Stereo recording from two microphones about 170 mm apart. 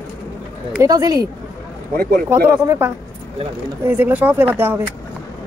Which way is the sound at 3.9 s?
10° right (ahead or behind).